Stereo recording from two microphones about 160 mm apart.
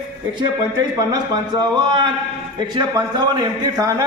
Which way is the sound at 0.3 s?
25° right (ahead or behind).